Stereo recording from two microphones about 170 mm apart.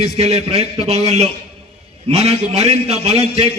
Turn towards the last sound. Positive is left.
turn(degrees=-35)  # may be behind; listen again after turning